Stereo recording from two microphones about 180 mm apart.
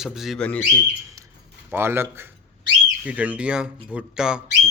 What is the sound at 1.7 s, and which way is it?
Speech, 10° right (ahead or behind).